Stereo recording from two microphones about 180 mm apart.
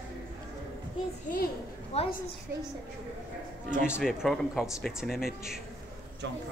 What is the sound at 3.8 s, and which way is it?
A man's voice, 5° right (ahead or behind).